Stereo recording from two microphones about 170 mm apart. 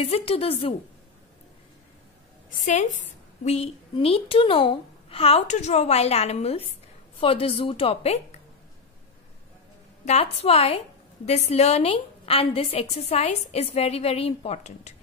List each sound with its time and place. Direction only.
0.0 s a woman's voice: 35° left (ahead or behind)
2.5 s a woman's voice: 45° left (ahead or behind)
3.4 s a woman's voice: 35° left (ahead or behind)
10.0 s a woman's voice: 35° left (ahead or behind)